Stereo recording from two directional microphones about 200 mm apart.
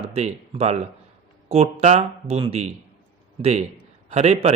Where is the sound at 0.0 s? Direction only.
35° right (ahead or behind).